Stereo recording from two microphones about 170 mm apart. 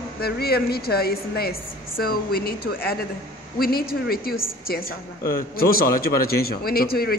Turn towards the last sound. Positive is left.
turn(degrees=65)  # may be behind; listen again after turning